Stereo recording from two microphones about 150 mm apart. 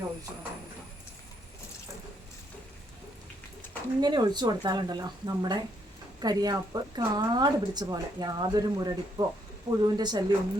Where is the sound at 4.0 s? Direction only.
30° right (ahead or behind).